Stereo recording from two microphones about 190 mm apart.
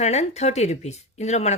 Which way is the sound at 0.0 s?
35° left (ahead or behind).